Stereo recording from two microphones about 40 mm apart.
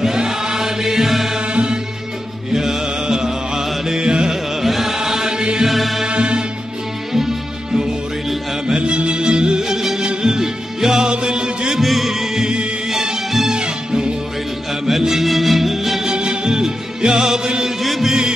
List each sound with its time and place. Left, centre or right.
0.0 s choir: centre
1.5 s music: right
2.5 s music: centre
4.6 s chant: centre; by 5.6 s right
5.6 s music: centre
6.0 s music: right
7.1 s music: centre
8.6 s music: right
11.8 s music: centre
16.1 s music: right
17.8 s music: centre